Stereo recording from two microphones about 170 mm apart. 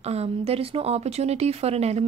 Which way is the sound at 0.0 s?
40° right (ahead or behind).